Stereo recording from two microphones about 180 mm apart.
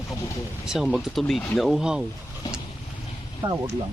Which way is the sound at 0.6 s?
5° right (ahead or behind).